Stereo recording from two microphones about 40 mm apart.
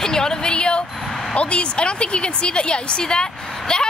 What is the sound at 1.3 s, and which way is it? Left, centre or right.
A woman's voice, left.